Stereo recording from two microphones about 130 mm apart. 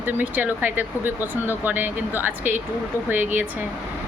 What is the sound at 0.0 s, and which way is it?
Speech, 15° right (ahead or behind).